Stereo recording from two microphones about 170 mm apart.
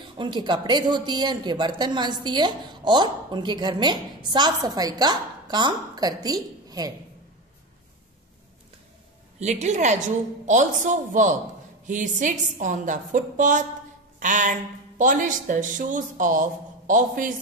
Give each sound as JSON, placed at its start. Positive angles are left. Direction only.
{"t": 0.2, "sound": "speech", "side_deg": -25}
{"t": 9.4, "sound": "speech", "side_deg": -40}